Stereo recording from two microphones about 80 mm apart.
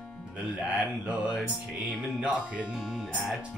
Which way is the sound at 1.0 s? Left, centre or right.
Centre.